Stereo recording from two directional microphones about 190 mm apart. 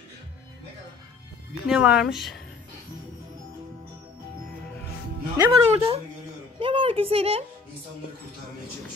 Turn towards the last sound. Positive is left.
turn(degrees=-30)  # may be behind; listen again after turning